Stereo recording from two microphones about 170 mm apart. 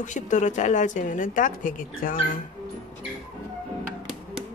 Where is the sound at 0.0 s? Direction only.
45° left (ahead or behind).